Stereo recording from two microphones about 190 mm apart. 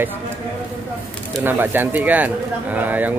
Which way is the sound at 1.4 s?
10° right (ahead or behind).